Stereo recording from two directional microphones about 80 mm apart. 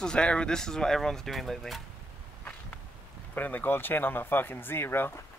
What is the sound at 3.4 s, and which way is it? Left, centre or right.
Speech, left.